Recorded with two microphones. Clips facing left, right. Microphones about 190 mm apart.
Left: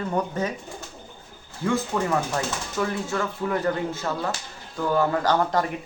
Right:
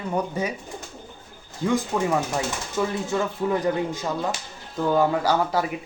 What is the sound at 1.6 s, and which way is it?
Speech, 15° right (ahead or behind).